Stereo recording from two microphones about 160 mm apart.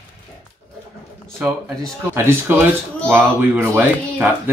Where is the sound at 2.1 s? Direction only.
15° right (ahead or behind).